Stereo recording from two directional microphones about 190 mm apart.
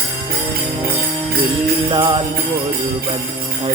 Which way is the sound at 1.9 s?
20° right (ahead or behind).